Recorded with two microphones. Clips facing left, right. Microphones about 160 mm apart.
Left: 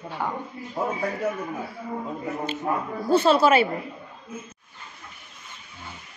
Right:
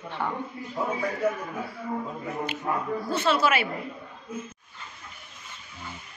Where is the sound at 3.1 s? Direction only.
30° left (ahead or behind).